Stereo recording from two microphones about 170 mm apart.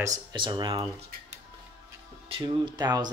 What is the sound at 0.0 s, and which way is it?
Speech, 20° right (ahead or behind).